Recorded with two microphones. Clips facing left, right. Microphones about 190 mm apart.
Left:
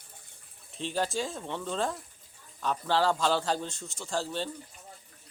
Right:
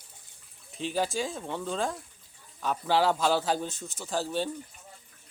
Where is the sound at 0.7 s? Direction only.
5° right (ahead or behind).